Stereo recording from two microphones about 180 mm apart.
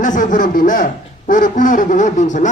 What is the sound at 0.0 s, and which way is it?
Speech, 45° left (ahead or behind).